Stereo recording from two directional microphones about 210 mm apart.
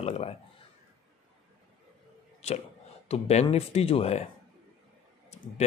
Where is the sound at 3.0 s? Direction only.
30° left (ahead or behind).